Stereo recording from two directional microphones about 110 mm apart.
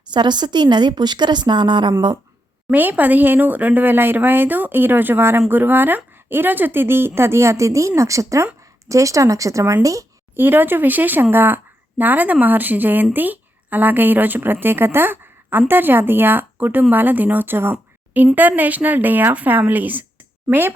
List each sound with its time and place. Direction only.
0.1 s a woman's voice: 40° right (ahead or behind)
2.6 s speech: 15° right (ahead or behind); by 10.1 s 30° right (ahead or behind)
10.3 s a woman's voice: 20° right (ahead or behind)